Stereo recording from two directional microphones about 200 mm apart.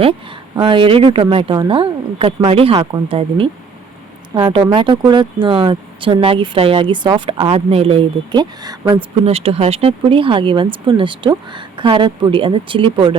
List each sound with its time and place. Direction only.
0.0 s speech: 30° right (ahead or behind)
9.2 s speech: 30° right (ahead or behind)